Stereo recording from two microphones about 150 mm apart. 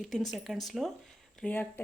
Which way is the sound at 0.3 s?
Centre (ahead or behind).